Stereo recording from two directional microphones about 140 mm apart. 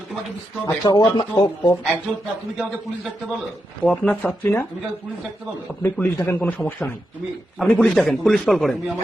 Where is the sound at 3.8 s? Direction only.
10° left (ahead or behind).